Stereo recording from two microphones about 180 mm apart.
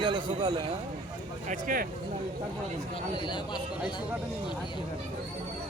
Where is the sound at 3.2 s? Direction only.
25° left (ahead or behind).